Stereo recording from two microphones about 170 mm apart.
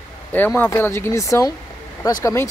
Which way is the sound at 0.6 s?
10° left (ahead or behind).